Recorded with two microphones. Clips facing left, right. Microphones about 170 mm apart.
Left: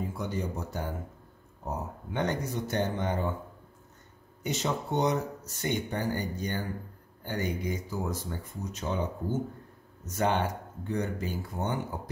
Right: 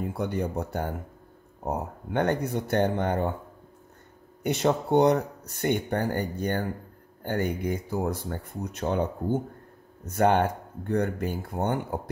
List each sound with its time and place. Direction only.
0.0 s speech: 60° right (ahead or behind)
4.4 s speech: 60° right (ahead or behind)